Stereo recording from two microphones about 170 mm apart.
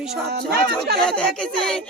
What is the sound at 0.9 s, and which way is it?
Speech, 5° left (ahead or behind).